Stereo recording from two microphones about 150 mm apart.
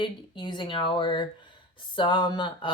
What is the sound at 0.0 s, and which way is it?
Speech, 30° left (ahead or behind).